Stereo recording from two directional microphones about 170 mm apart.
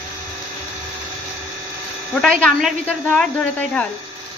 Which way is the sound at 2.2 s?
Centre (ahead or behind).